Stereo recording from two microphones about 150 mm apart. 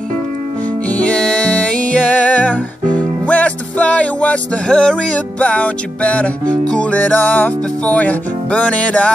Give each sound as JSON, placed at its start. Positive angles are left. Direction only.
{"t": 0.8, "sound": "music", "side_deg": 10}